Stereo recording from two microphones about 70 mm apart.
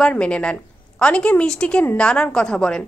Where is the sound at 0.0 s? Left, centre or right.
Centre.